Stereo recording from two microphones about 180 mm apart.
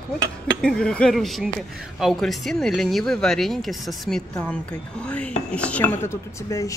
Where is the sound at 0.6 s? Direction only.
5° left (ahead or behind).